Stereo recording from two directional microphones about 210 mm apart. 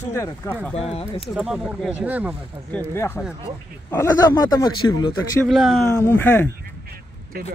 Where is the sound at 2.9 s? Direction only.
10° left (ahead or behind).